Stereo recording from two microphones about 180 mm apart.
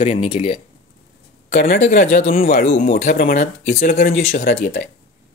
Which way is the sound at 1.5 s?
55° left (ahead or behind).